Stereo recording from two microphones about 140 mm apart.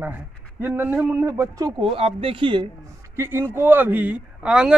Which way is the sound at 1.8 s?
40° right (ahead or behind).